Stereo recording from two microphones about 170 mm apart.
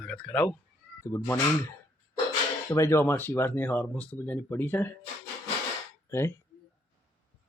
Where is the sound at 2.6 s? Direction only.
15° left (ahead or behind).